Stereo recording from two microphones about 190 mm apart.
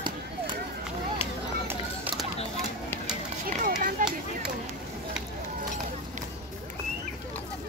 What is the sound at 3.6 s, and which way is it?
Run, 45° right (ahead or behind).